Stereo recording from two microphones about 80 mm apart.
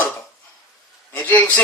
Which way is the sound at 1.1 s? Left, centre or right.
Centre.